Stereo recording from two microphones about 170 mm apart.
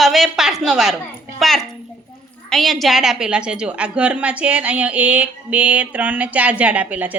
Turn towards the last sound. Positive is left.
turn(degrees=-10)  # may be behind; listen again after turning